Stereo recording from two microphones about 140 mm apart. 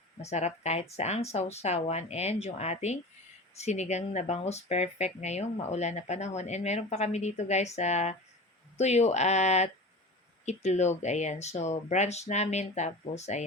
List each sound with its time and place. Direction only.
0.2 s speech: 50° left (ahead or behind)